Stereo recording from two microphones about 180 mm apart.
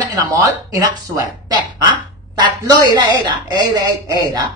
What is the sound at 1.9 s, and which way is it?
Speech, 25° right (ahead or behind).